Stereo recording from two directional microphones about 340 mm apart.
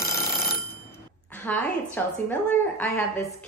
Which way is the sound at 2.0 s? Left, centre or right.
Centre.